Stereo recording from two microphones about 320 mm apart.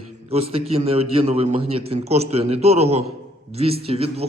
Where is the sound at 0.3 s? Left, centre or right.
Centre.